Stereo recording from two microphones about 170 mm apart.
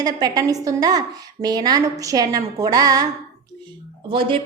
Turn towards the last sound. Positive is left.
turn(degrees=-30)  # may be behind; listen again after turning